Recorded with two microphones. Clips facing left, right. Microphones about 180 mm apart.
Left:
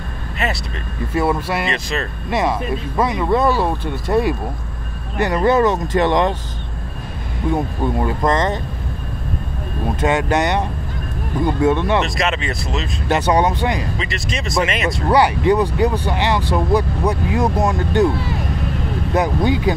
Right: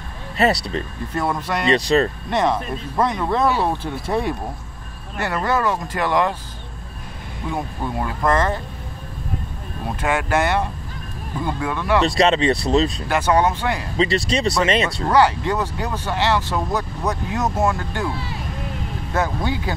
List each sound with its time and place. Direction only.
0.4 s speech: 35° right (ahead or behind)
1.1 s speech: 5° left (ahead or behind)
1.7 s speech: 35° right (ahead or behind)
2.2 s speech: 5° left (ahead or behind)
5.2 s speech: 20° left (ahead or behind)
8.2 s speech: 20° left (ahead or behind)
9.9 s speech: 20° left (ahead or behind)
12.0 s speech: 30° right (ahead or behind)
13.1 s speech: 15° left (ahead or behind)
13.9 s speech: 30° right (ahead or behind)
15.0 s speech: 15° left (ahead or behind)
19.1 s speech: 15° left (ahead or behind)